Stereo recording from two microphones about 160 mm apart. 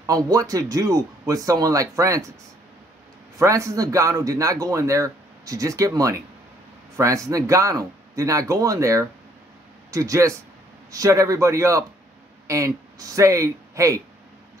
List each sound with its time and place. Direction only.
0.0 s a man's voice: 20° right (ahead or behind)
3.3 s a man's voice: 20° right (ahead or behind)